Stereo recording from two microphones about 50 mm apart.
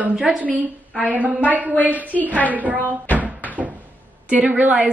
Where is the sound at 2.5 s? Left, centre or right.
Right.